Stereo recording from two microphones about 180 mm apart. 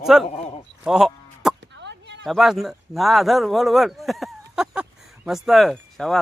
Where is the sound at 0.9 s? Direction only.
Centre (ahead or behind).